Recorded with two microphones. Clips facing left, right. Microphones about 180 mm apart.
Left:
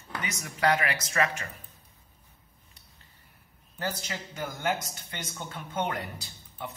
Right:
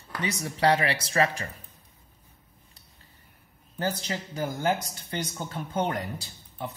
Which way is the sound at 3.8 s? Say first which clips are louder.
Right 4 dB; 30° right (ahead or behind).